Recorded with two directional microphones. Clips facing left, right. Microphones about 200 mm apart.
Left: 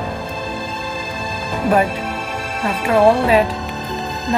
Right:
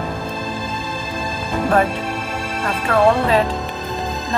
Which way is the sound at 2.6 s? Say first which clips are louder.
Left 2 dB; 10° left (ahead or behind).